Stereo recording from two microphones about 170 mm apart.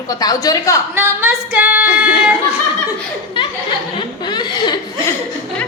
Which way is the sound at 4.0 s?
25° left (ahead or behind).